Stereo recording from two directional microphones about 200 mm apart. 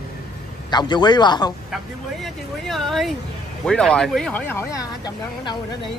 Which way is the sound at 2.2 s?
Centre (ahead or behind).